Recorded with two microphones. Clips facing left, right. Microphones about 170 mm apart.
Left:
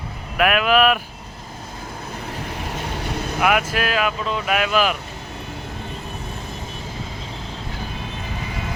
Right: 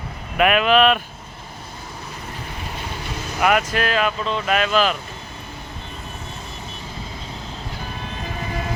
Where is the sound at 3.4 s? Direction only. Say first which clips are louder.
Right 1 dB; 5° left (ahead or behind).